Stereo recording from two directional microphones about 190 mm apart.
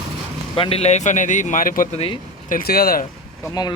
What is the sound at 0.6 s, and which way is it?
Speech, 30° left (ahead or behind).